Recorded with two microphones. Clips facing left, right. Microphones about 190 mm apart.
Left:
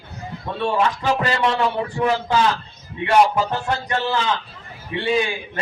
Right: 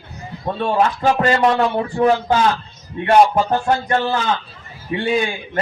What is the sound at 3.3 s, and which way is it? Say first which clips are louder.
Speech: right 5 dB; 45° right (ahead or behind).